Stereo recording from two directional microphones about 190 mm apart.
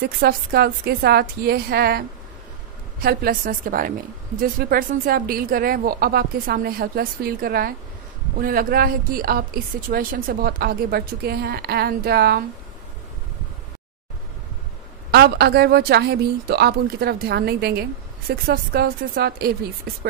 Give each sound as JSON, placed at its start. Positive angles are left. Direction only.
{"t": 0.0, "sound": "a woman's voice", "side_deg": -55}
{"t": 15.0, "sound": "speech", "side_deg": -60}